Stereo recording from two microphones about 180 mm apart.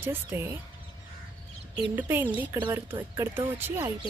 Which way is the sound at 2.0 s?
10° right (ahead or behind).